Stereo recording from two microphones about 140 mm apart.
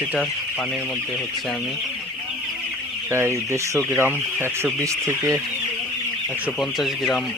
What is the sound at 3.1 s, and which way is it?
Speech, 20° right (ahead or behind).